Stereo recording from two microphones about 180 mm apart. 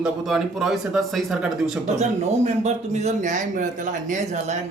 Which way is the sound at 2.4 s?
40° right (ahead or behind).